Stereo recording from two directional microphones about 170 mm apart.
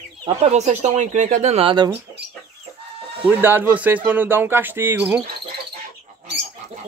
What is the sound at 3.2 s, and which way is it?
Speech, 10° right (ahead or behind).